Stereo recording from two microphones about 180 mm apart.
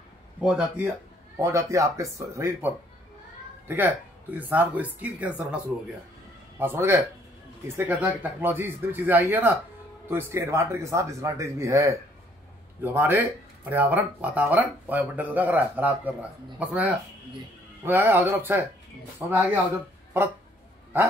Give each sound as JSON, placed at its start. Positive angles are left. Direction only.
{"t": 0.4, "sound": "speech", "side_deg": -5}
{"t": 1.3, "sound": "speech", "side_deg": -15}
{"t": 6.6, "sound": "speech", "side_deg": -10}